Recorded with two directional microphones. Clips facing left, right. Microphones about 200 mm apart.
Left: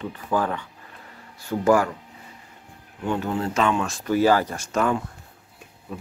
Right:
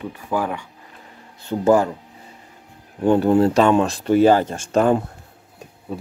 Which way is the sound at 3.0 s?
35° right (ahead or behind).